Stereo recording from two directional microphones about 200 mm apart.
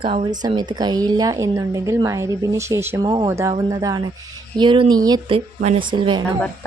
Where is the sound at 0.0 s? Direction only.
30° right (ahead or behind).